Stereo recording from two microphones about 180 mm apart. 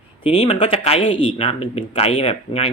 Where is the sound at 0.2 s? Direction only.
30° left (ahead or behind).